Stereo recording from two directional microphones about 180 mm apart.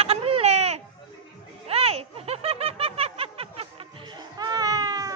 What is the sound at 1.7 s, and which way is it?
Snicker, 35° right (ahead or behind).